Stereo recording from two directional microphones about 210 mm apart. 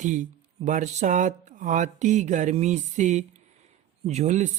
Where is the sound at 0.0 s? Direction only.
35° right (ahead or behind).